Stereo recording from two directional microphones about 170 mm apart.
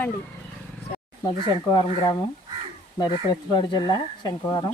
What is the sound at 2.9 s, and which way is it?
Speech, 25° left (ahead or behind).